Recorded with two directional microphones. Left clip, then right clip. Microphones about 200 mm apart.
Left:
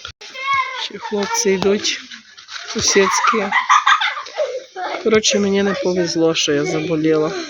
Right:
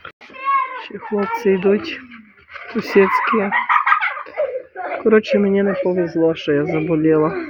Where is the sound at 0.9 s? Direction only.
10° right (ahead or behind); by 3.1 s 25° right (ahead or behind).